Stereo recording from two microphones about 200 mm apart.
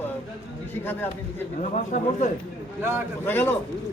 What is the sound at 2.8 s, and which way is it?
Speech, 10° right (ahead or behind).